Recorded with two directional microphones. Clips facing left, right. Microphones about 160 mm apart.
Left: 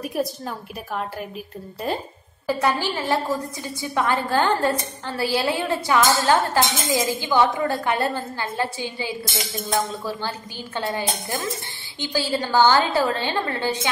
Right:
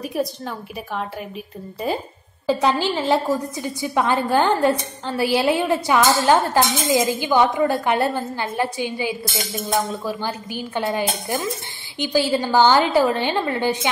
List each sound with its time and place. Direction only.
0.0 s a woman's voice: centre (ahead or behind)
2.4 s a woman's voice: 20° right (ahead or behind)